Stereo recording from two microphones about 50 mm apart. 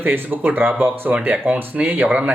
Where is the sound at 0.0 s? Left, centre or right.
Right.